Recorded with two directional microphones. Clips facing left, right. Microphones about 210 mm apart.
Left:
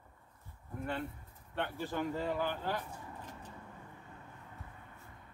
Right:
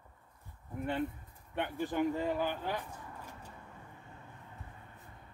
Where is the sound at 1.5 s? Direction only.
15° right (ahead or behind).